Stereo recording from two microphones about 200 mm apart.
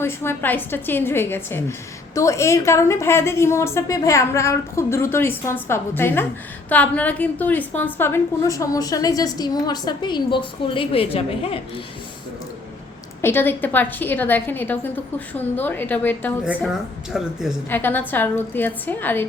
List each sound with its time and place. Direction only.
0.0 s a woman's voice: 10° left (ahead or behind); by 11.6 s 30° left (ahead or behind)
13.2 s a woman's voice: 10° left (ahead or behind)
17.1 s a woman's voice: centre (ahead or behind)
17.7 s a woman's voice: 10° left (ahead or behind)